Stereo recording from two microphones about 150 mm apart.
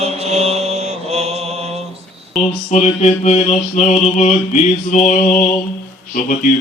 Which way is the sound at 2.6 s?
50° left (ahead or behind).